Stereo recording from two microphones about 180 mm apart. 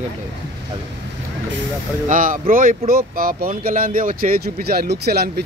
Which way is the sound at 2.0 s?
45° right (ahead or behind).